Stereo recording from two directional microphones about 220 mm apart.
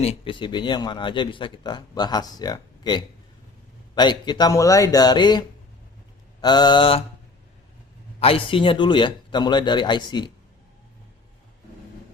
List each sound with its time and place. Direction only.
0.0 s speech: 25° left (ahead or behind)
8.2 s speech: 25° left (ahead or behind)